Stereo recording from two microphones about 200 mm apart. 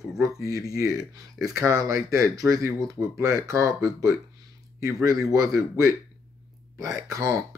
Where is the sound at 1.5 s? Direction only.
15° right (ahead or behind).